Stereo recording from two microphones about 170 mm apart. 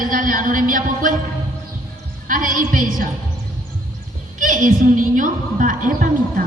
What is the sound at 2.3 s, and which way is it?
Speech, 55° right (ahead or behind).